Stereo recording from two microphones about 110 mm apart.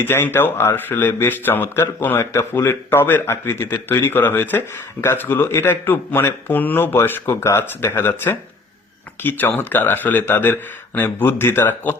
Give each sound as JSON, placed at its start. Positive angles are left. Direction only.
{"t": 0.0, "sound": "speech", "side_deg": 20}